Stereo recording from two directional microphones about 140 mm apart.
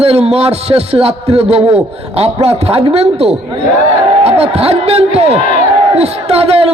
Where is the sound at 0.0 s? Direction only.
45° right (ahead or behind).